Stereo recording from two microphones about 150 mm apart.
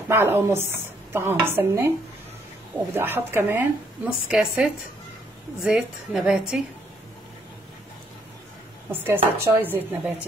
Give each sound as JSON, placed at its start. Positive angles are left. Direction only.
{"t": 0.1, "sound": "a woman's voice", "side_deg": -15}
{"t": 8.9, "sound": "a woman's voice", "side_deg": -15}